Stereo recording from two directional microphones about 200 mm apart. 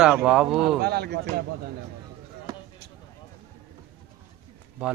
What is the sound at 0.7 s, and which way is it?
Speech, 50° right (ahead or behind).